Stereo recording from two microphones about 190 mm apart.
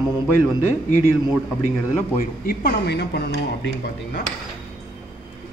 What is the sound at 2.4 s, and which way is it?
Speech, 55° left (ahead or behind).